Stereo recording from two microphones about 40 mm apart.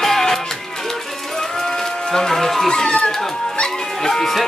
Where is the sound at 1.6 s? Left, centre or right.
Centre.